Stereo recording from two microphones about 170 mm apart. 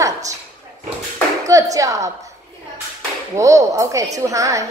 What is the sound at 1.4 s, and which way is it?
Speech, 20° right (ahead or behind).